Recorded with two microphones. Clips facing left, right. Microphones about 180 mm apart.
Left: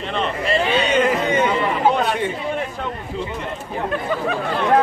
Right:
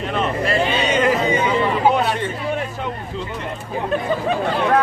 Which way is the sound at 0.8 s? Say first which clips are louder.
Right 1 dB; 60° left (ahead or behind).